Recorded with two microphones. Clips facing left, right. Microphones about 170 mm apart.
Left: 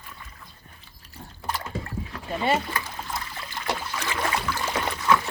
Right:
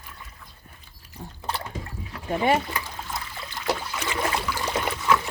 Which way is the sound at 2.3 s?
15° right (ahead or behind).